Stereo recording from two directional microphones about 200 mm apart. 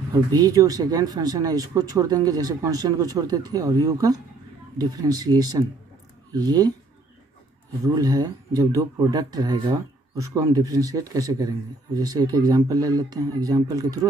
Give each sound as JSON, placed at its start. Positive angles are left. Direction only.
{"t": 0.1, "sound": "speech", "side_deg": -20}
{"t": 7.8, "sound": "speech", "side_deg": -20}